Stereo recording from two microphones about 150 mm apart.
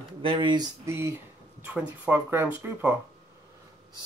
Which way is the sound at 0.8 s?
20° right (ahead or behind).